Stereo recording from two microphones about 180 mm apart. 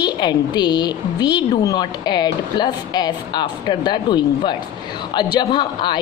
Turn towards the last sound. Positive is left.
turn(degrees=25)  # may be behind; listen again after turning